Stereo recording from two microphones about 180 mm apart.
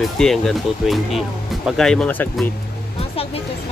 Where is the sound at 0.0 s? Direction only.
Centre (ahead or behind).